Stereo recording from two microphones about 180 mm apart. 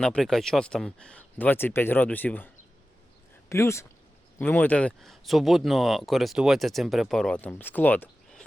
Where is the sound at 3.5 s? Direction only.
15° left (ahead or behind).